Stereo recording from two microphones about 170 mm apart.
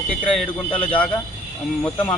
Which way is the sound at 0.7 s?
30° left (ahead or behind).